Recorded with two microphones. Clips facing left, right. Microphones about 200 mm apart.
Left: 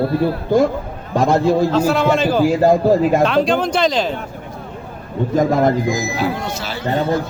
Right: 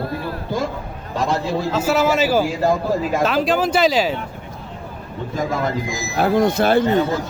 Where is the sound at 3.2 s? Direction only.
5° right (ahead or behind).